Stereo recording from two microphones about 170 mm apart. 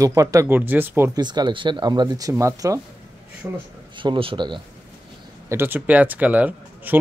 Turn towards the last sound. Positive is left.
turn(degrees=-10)  # may be behind; listen again after turning